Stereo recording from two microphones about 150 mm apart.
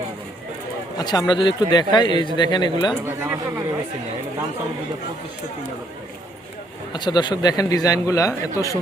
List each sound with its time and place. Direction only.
0.9 s a man's voice: 25° left (ahead or behind)
3.2 s speech: 20° right (ahead or behind)
6.9 s a man's voice: 30° left (ahead or behind)